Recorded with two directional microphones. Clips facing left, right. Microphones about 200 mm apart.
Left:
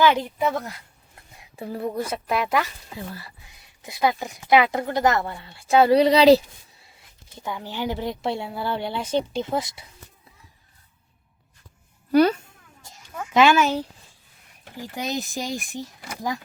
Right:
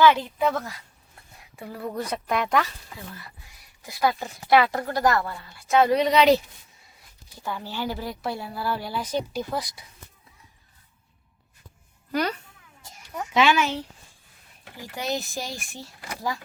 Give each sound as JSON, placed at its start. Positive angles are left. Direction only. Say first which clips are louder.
{"t": 0.0, "sound": "speech", "louder": "right 1 dB", "side_deg": 15}
{"t": 1.5, "sound": "speech", "louder": "left 5 dB", "side_deg": 25}
{"t": 1.9, "sound": "speech", "louder": "even", "side_deg": 10}
{"t": 2.9, "sound": "speech", "louder": "left 5 dB", "side_deg": 25}
{"t": 7.3, "sound": "speech", "louder": "left 1 dB", "side_deg": 15}
{"t": 13.3, "sound": "speech", "louder": "left 4 dB", "side_deg": 45}
{"t": 14.9, "sound": "speech", "louder": "left 1 dB", "side_deg": 20}